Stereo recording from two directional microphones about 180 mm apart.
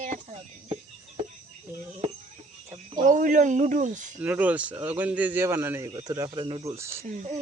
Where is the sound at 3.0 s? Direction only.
45° right (ahead or behind).